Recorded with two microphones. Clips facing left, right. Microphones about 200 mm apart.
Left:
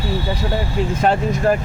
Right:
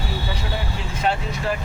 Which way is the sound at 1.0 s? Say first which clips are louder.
Left 5 dB; 45° left (ahead or behind).